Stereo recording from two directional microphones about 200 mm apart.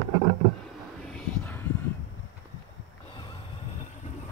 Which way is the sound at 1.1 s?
10° left (ahead or behind).